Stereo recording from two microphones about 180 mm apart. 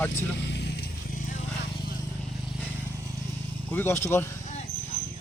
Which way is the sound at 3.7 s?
10° left (ahead or behind).